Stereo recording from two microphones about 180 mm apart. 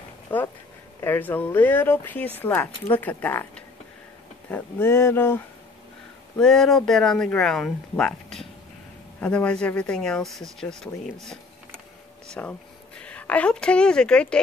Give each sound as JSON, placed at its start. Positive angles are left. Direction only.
{"t": 0.3, "sound": "speech", "side_deg": 10}
{"t": 6.4, "sound": "speech", "side_deg": 5}
{"t": 12.4, "sound": "a woman's voice", "side_deg": 10}